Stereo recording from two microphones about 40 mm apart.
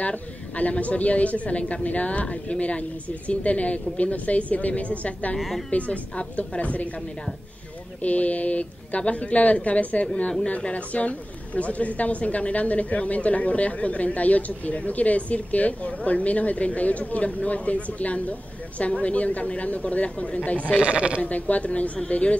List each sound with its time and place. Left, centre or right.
0.0 s speech: left
5.4 s a woman's voice: centre
5.7 s speech: left
8.0 s speech: left
20.8 s speech: right
21.2 s speech: left